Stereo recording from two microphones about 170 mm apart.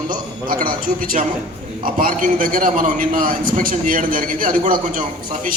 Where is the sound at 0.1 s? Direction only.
55° right (ahead or behind).